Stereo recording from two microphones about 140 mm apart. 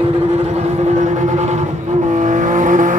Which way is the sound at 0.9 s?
55° right (ahead or behind).